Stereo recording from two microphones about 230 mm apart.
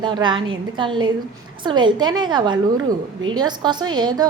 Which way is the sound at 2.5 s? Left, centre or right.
Right.